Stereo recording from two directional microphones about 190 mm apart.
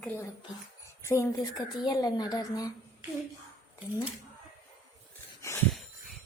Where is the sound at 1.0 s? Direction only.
15° left (ahead or behind).